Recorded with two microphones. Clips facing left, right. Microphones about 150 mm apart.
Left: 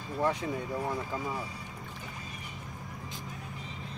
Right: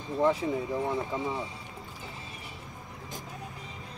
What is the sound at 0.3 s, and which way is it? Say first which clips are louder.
Speech: right 4 dB; centre (ahead or behind).